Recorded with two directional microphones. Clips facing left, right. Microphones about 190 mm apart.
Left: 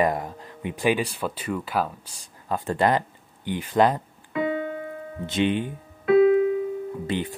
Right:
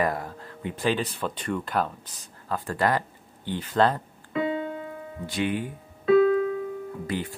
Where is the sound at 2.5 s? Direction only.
20° left (ahead or behind).